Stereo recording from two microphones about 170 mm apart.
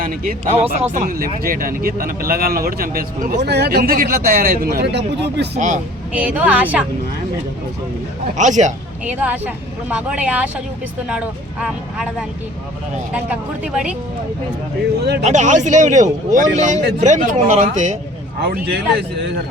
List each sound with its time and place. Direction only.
0.0 s speech: 55° right (ahead or behind)
3.4 s speech: 75° right (ahead or behind)
5.5 s speech: 45° right (ahead or behind)
6.1 s speech: 10° right (ahead or behind)
8.4 s speech: 45° right (ahead or behind)
9.0 s speech: 10° right (ahead or behind)
13.1 s speech: 5° right (ahead or behind)
15.2 s speech: 45° right (ahead or behind)
18.3 s speech: 75° right (ahead or behind)